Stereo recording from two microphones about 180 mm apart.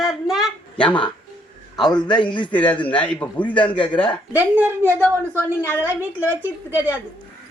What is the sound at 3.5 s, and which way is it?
Speech, 30° left (ahead or behind).